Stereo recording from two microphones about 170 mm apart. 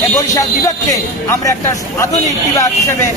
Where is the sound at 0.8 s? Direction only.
15° left (ahead or behind).